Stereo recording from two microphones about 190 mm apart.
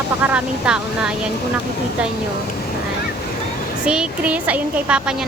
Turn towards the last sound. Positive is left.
turn(degrees=-5)  # may be behind; listen again after turning